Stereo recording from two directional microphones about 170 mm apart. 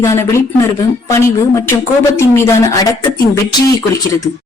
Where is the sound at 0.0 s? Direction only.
15° left (ahead or behind).